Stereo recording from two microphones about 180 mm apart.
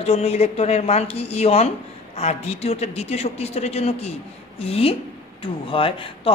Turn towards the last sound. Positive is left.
turn(degrees=30)  # may be behind; listen again after turning